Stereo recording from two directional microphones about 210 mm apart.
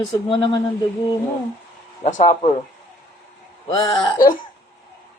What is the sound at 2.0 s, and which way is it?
Speech, 35° left (ahead or behind).